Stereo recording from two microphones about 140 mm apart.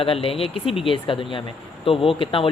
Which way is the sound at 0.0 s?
40° left (ahead or behind).